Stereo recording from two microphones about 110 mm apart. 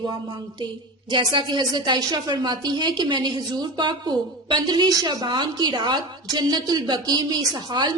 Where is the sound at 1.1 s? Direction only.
45° right (ahead or behind).